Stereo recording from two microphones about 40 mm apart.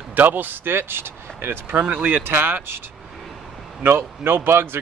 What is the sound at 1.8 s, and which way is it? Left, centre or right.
Speech, right.